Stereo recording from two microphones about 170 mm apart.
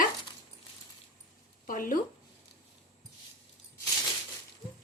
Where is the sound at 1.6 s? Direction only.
55° left (ahead or behind).